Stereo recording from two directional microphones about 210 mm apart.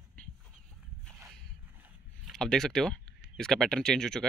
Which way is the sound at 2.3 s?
5° left (ahead or behind).